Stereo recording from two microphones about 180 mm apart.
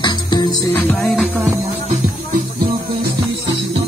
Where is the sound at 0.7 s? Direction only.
10° left (ahead or behind).